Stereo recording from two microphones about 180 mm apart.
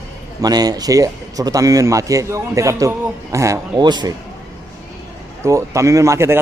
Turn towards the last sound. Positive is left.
turn(degrees=-15)  # may be behind; listen again after turning